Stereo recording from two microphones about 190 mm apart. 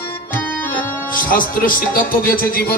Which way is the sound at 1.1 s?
45° left (ahead or behind).